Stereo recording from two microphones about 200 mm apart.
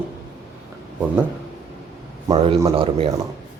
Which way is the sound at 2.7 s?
30° right (ahead or behind).